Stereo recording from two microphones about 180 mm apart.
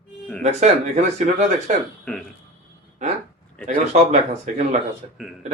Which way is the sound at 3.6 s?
40° right (ahead or behind).